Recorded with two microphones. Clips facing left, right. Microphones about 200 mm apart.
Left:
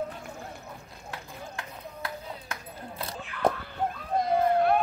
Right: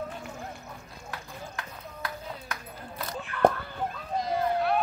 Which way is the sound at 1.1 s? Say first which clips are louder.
Even; 25° left (ahead or behind).